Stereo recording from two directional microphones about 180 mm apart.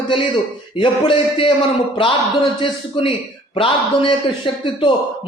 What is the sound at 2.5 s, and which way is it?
A man's voice, 30° left (ahead or behind).